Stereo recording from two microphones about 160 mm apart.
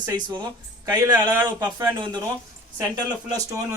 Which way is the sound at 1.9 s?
30° right (ahead or behind).